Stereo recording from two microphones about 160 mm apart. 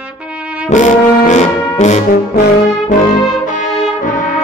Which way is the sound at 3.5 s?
55° left (ahead or behind).